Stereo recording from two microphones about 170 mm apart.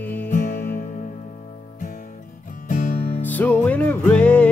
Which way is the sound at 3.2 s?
10° left (ahead or behind).